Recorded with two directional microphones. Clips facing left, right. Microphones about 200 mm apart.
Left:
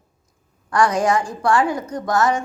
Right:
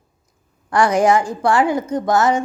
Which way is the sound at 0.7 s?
25° right (ahead or behind).